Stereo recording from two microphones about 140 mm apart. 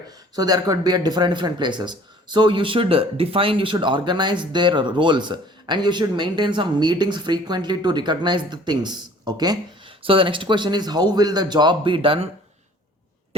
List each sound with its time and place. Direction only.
0.3 s speech: 25° right (ahead or behind)
10.0 s speech: 40° right (ahead or behind)